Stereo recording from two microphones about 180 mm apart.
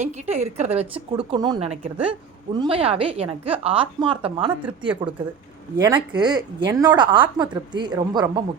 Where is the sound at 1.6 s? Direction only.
35° right (ahead or behind).